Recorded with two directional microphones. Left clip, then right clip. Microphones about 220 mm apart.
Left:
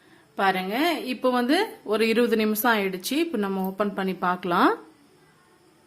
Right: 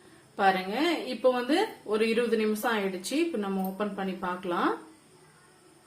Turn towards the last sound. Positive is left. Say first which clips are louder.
# left 8 dB
turn(degrees=50)  # may be behind; listen again after turning